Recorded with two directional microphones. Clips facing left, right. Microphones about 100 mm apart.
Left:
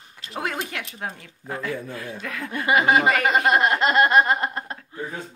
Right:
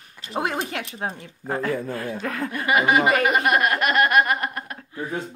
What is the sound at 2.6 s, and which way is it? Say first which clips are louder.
Speech: even; 25° left (ahead or behind).